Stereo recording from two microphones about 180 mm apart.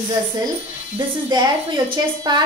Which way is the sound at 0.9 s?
25° right (ahead or behind).